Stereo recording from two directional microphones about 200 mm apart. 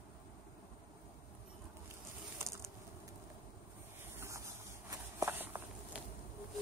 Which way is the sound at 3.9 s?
15° right (ahead or behind).